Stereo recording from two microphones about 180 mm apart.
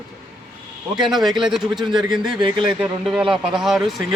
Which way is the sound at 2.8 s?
Centre (ahead or behind).